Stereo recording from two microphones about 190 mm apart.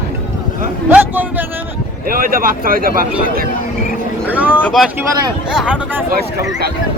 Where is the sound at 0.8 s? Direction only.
10° right (ahead or behind).